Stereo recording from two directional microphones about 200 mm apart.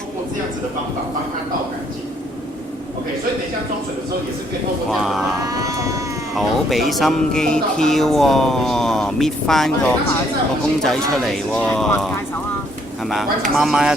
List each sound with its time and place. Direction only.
4.9 s speech: centre (ahead or behind)
5.5 s vehicle: 15° right (ahead or behind)
6.3 s speech: centre (ahead or behind)
13.6 s speech: centre (ahead or behind)